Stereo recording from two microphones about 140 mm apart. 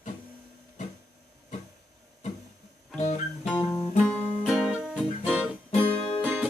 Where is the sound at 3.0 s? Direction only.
55° left (ahead or behind).